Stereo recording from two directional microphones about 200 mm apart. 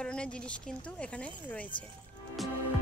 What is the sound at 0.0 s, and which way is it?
Speech, 5° left (ahead or behind).